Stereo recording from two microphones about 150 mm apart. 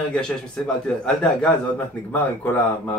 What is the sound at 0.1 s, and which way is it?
A man's voice, 5° left (ahead or behind).